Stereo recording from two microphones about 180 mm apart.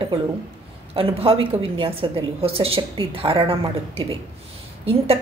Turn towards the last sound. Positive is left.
turn(degrees=-30)  # may be behind; listen again after turning